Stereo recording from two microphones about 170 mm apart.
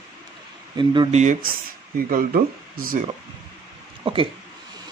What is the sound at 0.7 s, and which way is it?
Speech, 25° right (ahead or behind).